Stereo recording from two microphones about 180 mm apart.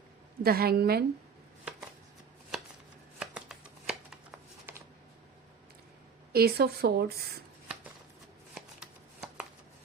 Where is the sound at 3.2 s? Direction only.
5° right (ahead or behind).